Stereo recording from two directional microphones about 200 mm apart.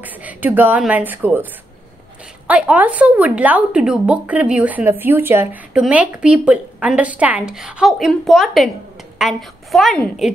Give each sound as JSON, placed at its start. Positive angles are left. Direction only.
{"t": 0.0, "sound": "a woman's voice", "side_deg": -10}